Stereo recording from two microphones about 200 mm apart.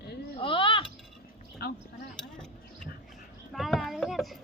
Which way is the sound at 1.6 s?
50° left (ahead or behind).